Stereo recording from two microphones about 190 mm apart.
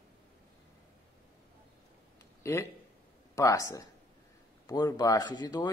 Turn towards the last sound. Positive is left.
turn(degrees=20)  # may be behind; listen again after turning